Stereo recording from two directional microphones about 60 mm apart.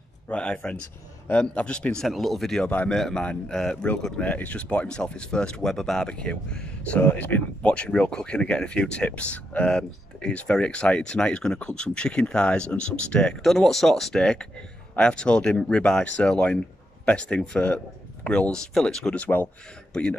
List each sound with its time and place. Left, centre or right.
0.3 s speech: centre
2.0 s speech: centre
7.0 s speech: left
13.4 s a man's voice: centre